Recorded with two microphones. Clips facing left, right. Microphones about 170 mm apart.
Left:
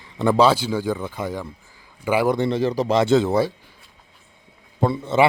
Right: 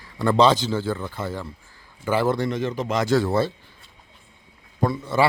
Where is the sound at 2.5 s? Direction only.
35° left (ahead or behind); by 3.5 s 15° left (ahead or behind).